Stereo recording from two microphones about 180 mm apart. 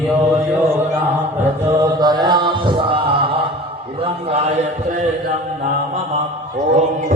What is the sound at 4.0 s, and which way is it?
Mantra, 35° right (ahead or behind).